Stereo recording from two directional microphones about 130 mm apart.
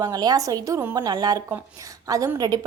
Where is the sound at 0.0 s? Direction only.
30° right (ahead or behind).